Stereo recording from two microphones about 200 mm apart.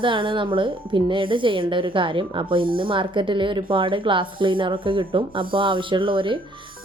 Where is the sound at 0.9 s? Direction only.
25° right (ahead or behind).